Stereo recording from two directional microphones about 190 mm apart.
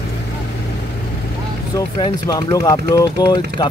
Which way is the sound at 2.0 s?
25° left (ahead or behind).